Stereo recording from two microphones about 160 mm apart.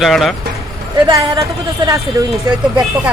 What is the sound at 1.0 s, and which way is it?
Speech, 20° right (ahead or behind).